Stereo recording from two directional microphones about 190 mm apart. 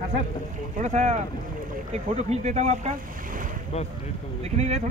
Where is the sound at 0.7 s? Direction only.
40° right (ahead or behind).